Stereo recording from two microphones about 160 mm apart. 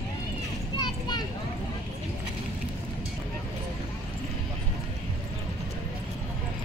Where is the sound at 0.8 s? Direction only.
25° left (ahead or behind).